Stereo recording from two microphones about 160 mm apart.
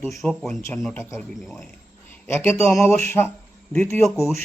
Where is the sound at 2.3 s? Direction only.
15° left (ahead or behind).